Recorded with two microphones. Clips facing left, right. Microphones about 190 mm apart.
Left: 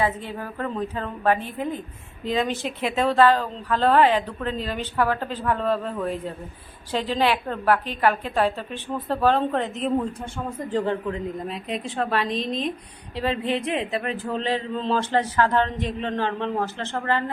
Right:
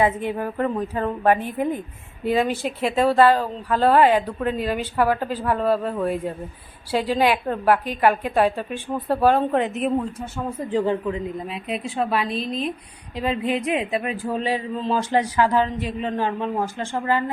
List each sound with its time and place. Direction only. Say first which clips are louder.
0.0 s a woman's voice: right 5 dB; 15° right (ahead or behind)